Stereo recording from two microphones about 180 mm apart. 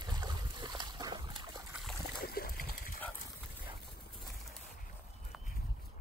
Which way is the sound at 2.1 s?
55° left (ahead or behind).